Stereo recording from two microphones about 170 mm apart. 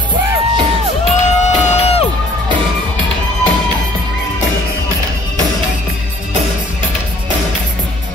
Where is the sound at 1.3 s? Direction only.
40° left (ahead or behind).